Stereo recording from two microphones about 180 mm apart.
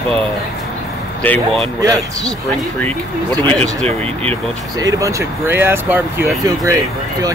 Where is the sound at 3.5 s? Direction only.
35° right (ahead or behind).